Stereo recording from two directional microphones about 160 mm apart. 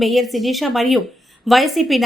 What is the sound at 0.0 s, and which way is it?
Speech, centre (ahead or behind).